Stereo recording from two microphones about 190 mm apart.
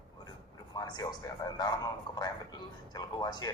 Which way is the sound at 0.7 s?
20° left (ahead or behind).